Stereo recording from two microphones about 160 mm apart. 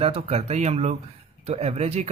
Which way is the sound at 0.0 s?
35° right (ahead or behind).